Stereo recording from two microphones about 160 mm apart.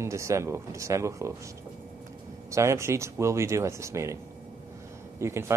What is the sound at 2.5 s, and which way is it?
Speech, 15° right (ahead or behind).